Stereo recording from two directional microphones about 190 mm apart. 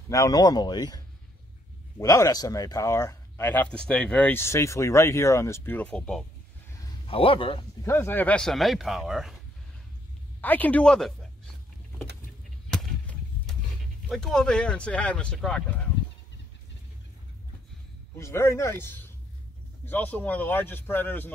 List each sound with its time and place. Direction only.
0.1 s a man's voice: 20° left (ahead or behind)
7.1 s a man's voice: 30° left (ahead or behind)
7.8 s speech: 15° left (ahead or behind)
10.4 s speech: 10° left (ahead or behind)
12.6 s a sound: 5° left (ahead or behind)
14.0 s speech: centre (ahead or behind)
18.1 s speech: 15° left (ahead or behind)